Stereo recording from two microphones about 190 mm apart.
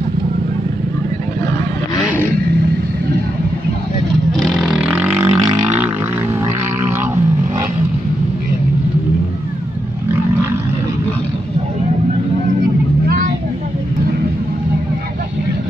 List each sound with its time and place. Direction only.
4.3 s vehicle: centre (ahead or behind)
5.6 s music: 10° right (ahead or behind)